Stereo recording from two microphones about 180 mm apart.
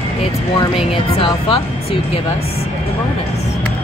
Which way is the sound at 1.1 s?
30° left (ahead or behind).